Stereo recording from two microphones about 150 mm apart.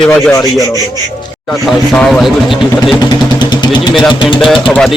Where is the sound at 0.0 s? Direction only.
10° left (ahead or behind).